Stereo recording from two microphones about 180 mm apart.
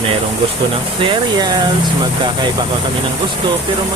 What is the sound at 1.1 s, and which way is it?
Speech, 25° right (ahead or behind).